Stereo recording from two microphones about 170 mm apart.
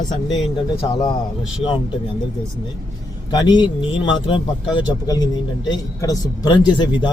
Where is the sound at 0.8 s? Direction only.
20° left (ahead or behind).